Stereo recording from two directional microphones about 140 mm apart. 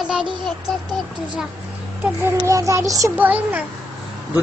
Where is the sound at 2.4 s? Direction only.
20° right (ahead or behind).